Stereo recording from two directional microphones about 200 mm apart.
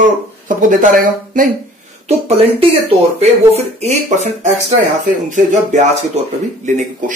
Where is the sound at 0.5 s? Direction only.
40° right (ahead or behind).